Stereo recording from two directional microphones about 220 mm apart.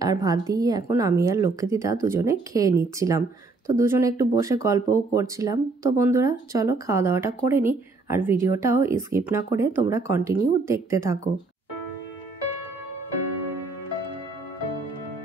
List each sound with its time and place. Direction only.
0.0 s speech: 15° right (ahead or behind)